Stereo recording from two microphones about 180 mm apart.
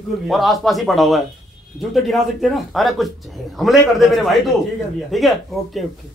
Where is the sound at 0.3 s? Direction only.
Centre (ahead or behind).